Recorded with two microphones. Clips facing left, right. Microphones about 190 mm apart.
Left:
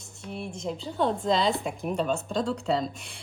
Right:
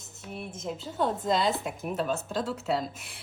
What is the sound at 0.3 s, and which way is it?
Speech, 5° right (ahead or behind).